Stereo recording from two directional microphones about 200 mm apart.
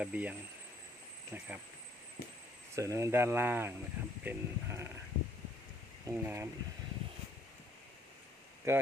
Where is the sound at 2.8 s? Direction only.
15° right (ahead or behind).